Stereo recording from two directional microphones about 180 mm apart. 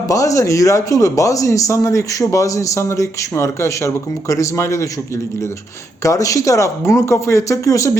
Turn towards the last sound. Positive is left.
turn(degrees=15)  # may be behind; listen again after turning